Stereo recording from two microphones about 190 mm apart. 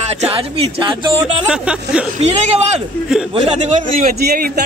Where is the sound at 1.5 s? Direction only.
5° right (ahead or behind).